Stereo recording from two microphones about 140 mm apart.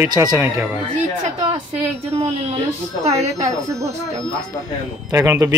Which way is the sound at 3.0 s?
50° right (ahead or behind).